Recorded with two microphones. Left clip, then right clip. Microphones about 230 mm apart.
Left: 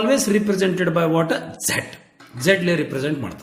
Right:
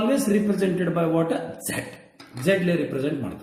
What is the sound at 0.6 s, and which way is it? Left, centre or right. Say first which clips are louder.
A man's voice: left 4 dB; left.